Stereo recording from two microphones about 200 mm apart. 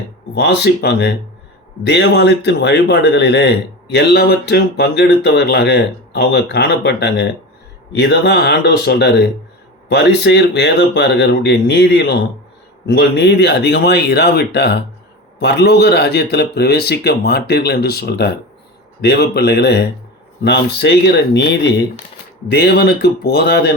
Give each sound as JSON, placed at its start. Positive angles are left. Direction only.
{"t": 0.3, "sound": "speech", "side_deg": 55}